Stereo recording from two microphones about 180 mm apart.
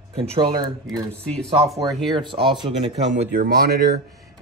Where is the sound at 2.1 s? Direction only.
25° right (ahead or behind).